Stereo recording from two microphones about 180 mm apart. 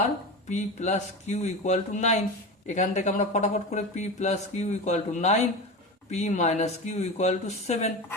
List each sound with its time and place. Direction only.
0.4 s speech: 40° left (ahead or behind)